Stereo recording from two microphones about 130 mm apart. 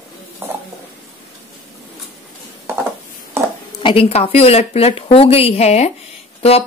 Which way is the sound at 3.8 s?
45° left (ahead or behind).